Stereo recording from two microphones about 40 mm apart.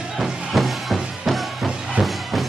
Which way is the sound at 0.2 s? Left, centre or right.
Centre.